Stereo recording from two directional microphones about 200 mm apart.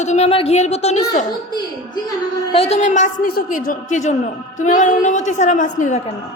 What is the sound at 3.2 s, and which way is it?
A man's voice, 45° left (ahead or behind).